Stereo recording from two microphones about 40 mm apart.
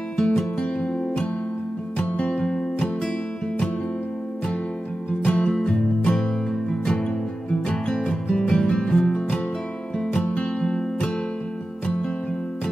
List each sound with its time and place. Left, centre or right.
0.2 s music: centre
0.7 s music: left
5.3 s music: left
7.6 s music: left